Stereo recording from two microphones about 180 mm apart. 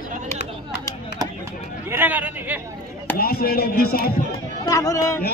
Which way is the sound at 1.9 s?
10° right (ahead or behind).